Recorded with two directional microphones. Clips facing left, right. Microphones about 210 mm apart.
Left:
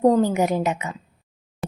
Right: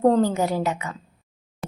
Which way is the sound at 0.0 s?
10° left (ahead or behind).